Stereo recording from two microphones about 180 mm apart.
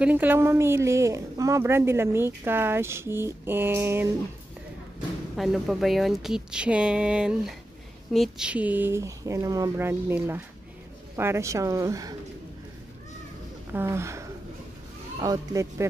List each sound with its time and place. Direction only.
0.0 s a woman's voice: 10° right (ahead or behind)
5.3 s a woman's voice: centre (ahead or behind); by 12.2 s 20° right (ahead or behind)
13.7 s a woman's voice: 15° right (ahead or behind)